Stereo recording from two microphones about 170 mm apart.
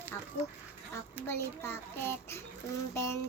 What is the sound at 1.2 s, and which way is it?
Child singing, 15° left (ahead or behind).